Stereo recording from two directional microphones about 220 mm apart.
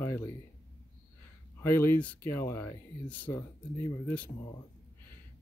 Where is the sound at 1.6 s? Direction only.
10° left (ahead or behind).